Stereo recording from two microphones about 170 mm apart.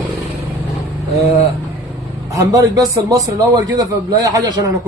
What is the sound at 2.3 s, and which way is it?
A man's voice, 20° right (ahead or behind).